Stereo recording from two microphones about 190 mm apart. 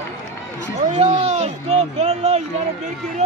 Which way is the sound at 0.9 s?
35° right (ahead or behind).